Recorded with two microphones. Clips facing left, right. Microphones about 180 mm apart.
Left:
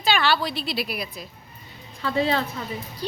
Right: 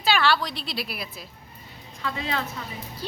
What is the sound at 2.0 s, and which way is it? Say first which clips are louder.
Speech: left 7 dB; 30° left (ahead or behind).